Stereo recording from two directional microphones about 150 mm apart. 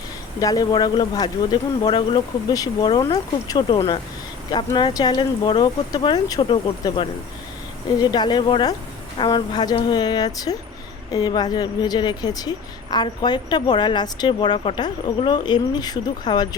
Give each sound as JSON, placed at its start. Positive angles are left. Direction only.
{"t": 0.3, "sound": "a woman's voice", "side_deg": 25}